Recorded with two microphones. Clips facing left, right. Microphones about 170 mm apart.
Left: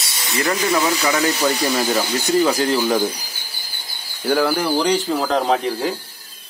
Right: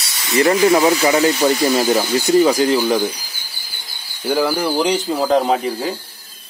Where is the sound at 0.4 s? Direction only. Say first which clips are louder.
Right 7 dB; 25° right (ahead or behind).